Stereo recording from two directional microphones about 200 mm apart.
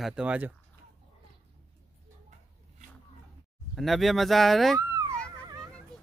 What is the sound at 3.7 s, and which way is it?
Speech, centre (ahead or behind).